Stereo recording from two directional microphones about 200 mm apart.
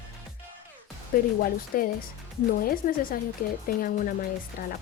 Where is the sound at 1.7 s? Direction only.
45° left (ahead or behind).